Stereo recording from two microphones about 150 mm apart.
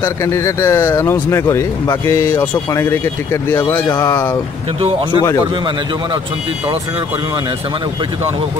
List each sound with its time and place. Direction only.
0.0 s speech: 20° left (ahead or behind)